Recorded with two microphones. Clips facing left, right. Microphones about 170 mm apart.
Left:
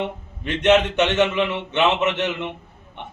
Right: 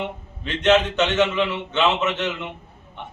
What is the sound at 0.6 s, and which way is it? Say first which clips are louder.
Speech: left 1 dB; 15° left (ahead or behind).